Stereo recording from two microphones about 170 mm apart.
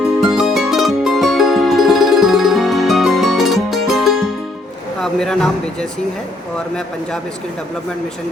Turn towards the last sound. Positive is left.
turn(degrees=5)  # may be behind; listen again after turning